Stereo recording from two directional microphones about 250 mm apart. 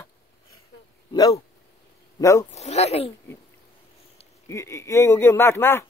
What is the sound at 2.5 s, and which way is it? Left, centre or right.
Speech, left.